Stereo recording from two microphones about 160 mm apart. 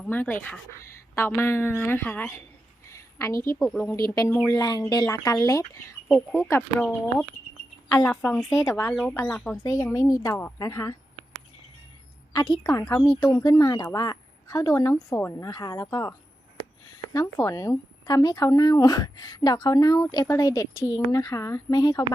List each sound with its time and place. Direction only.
0.0 s a woman's voice: 10° left (ahead or behind)
2.9 s a sound: 20° left (ahead or behind)
3.7 s a woman's voice: 10° left (ahead or behind)
6.6 s a woman's voice: 5° left (ahead or behind); by 10.9 s 20° left (ahead or behind)
12.3 s speech: 25° left (ahead or behind)